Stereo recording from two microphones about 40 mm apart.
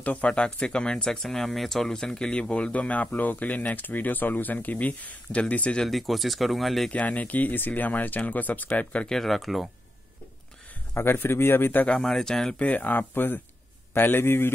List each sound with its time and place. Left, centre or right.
0.0 s speech: left
0.3 s speech: left
5.9 s speech: centre
6.9 s speech: left
9.2 s speech: centre
11.0 s a man's voice: left
11.9 s speech: centre
12.5 s speech: left
13.9 s a man's voice: left